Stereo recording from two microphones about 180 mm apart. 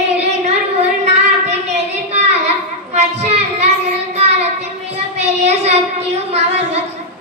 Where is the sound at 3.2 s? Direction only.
35° right (ahead or behind).